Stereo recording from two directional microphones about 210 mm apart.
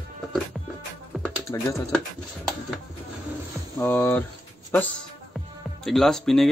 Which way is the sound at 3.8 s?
10° left (ahead or behind).